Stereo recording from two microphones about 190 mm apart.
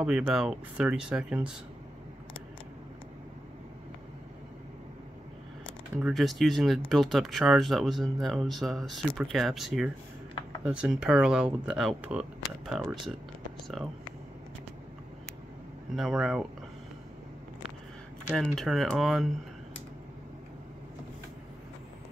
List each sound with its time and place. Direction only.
0.0 s speech: 5° right (ahead or behind)
5.9 s speech: centre (ahead or behind)
12.8 s speech: 25° right (ahead or behind)
16.0 s speech: centre (ahead or behind)
18.3 s speech: centre (ahead or behind)